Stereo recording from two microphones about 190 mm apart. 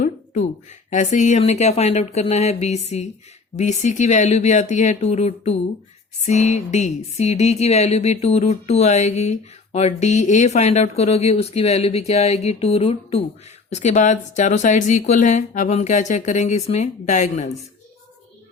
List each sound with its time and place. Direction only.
0.0 s speech: 40° left (ahead or behind)